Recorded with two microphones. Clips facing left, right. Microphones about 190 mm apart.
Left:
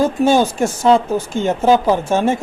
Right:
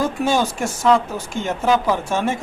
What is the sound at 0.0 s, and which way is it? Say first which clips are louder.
Speech: left 6 dB; 30° left (ahead or behind).